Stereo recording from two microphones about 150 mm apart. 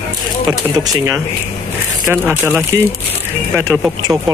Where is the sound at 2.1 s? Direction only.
10° right (ahead or behind).